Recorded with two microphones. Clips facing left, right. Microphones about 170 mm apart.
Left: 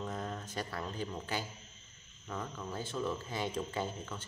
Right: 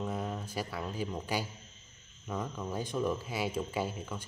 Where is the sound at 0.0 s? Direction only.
10° right (ahead or behind).